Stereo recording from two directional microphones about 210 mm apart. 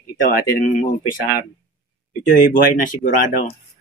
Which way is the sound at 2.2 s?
40° left (ahead or behind).